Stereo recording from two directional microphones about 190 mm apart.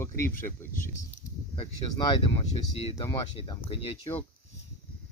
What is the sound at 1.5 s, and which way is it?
Speech, 25° left (ahead or behind).